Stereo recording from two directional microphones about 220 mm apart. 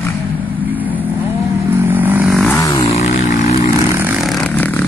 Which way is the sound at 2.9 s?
30° left (ahead or behind).